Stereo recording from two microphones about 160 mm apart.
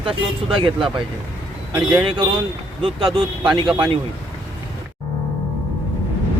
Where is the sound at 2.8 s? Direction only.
35° right (ahead or behind).